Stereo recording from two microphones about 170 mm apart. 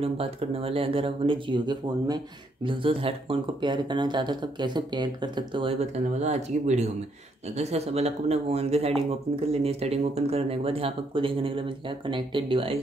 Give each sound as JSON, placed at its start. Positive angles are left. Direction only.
{"t": 0.0, "sound": "speech", "side_deg": -35}